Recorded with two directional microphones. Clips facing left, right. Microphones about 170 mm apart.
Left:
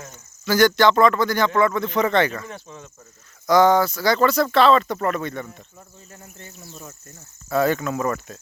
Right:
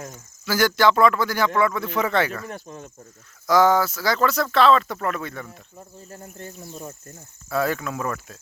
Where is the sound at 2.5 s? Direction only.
45° right (ahead or behind).